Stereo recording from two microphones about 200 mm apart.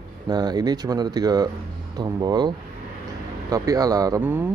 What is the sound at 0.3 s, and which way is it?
Speech, 20° right (ahead or behind).